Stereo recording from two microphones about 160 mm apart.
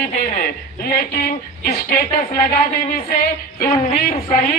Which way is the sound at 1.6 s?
60° left (ahead or behind).